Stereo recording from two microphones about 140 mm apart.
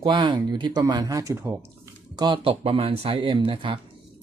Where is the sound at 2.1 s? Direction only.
35° right (ahead or behind).